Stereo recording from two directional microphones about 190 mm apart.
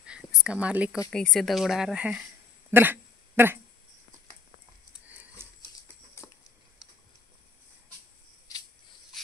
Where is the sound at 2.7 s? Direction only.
10° right (ahead or behind).